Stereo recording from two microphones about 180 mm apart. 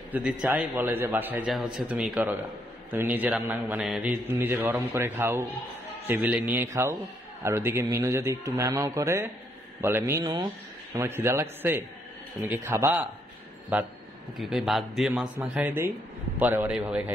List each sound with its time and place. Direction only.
0.1 s a man's voice: 10° right (ahead or behind)
14.3 s a man's voice: centre (ahead or behind)